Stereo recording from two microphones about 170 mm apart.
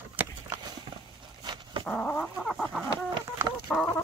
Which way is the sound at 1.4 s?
25° right (ahead or behind).